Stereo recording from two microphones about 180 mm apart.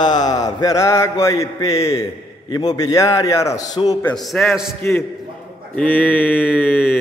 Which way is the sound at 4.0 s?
5° left (ahead or behind).